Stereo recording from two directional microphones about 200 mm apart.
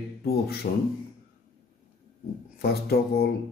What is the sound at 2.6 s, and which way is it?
Speech, 50° left (ahead or behind).